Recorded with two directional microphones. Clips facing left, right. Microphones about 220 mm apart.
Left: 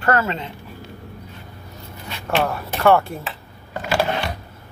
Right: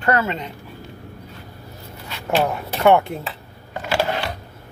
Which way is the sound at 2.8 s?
20° right (ahead or behind).